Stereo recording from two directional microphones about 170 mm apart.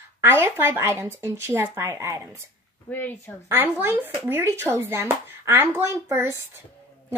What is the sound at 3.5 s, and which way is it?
Speech, 15° right (ahead or behind).